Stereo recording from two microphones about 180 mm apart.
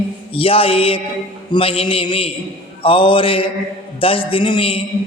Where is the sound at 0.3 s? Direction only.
30° left (ahead or behind).